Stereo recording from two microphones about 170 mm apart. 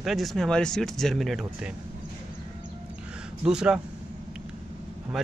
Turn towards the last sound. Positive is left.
turn(degrees=0)  # may be behind; listen again after turning